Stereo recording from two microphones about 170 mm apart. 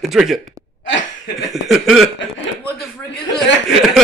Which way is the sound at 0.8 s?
90° left.